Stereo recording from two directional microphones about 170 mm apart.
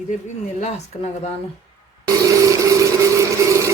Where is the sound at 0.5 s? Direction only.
40° left (ahead or behind).